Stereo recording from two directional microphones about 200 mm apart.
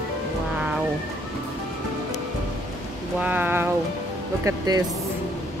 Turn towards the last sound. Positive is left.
turn(degrees=-20)  # may be behind; listen again after turning